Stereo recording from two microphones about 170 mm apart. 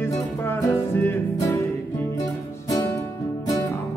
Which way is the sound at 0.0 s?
15° left (ahead or behind).